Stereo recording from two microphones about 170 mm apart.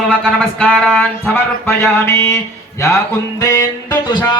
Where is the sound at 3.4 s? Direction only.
20° left (ahead or behind).